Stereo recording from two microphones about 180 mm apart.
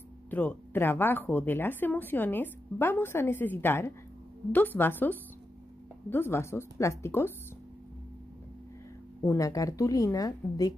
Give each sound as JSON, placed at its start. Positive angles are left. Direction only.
{"t": 0.3, "sound": "speech", "side_deg": 10}
{"t": 9.2, "sound": "a woman's voice", "side_deg": 20}